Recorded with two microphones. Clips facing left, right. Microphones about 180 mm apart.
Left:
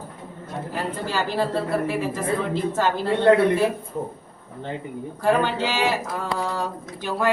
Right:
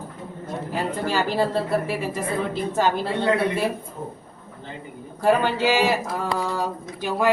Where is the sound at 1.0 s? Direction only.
10° right (ahead or behind).